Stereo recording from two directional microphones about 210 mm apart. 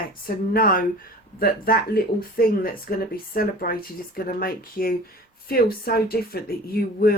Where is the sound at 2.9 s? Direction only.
45° left (ahead or behind).